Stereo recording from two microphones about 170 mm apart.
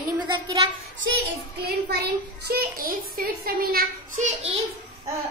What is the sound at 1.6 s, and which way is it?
A child's voice, 70° right (ahead or behind).